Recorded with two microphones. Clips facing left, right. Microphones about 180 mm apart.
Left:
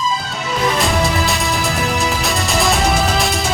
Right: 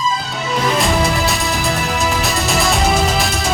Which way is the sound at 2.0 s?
Centre (ahead or behind).